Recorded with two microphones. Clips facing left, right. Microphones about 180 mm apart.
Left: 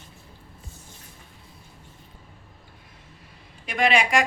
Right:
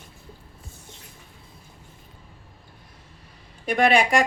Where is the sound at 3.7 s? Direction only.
55° right (ahead or behind).